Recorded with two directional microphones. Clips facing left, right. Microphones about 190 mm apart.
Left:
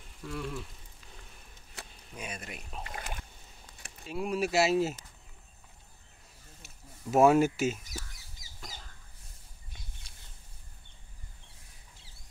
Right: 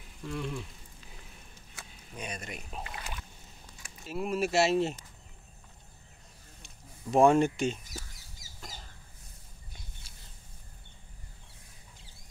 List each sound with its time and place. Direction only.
0.2 s speech: centre (ahead or behind)
2.1 s speech: 5° left (ahead or behind)
2.9 s a sound: 45° left (ahead or behind)
4.0 s speech: centre (ahead or behind)
6.6 s speech: 5° left (ahead or behind)
8.5 s chicken: centre (ahead or behind)